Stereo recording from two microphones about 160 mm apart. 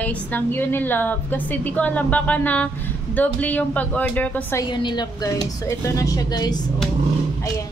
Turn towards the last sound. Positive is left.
turn(degrees=25)  # may be behind; listen again after turning